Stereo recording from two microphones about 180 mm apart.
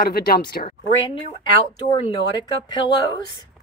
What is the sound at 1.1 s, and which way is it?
Speech, 25° left (ahead or behind).